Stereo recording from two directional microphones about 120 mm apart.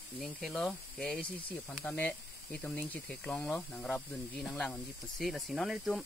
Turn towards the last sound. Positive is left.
turn(degrees=0)  # may be behind; listen again after turning